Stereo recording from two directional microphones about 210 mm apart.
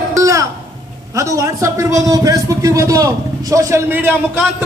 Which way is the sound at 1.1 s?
15° right (ahead or behind).